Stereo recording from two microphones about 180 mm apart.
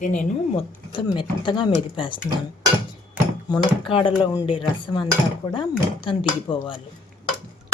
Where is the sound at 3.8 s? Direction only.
30° left (ahead or behind).